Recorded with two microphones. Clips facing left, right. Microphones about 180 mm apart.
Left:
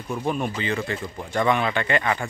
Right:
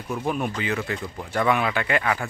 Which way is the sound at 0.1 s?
5° right (ahead or behind).